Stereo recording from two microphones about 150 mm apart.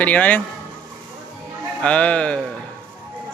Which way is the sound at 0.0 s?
10° left (ahead or behind).